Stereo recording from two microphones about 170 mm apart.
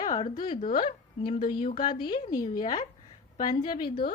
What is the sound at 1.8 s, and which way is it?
A woman's voice, 25° left (ahead or behind).